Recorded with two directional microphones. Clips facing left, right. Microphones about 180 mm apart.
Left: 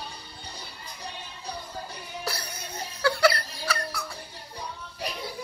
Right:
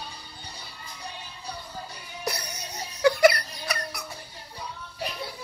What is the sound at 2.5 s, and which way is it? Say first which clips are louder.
Music: left 1 dB; 20° right (ahead or behind).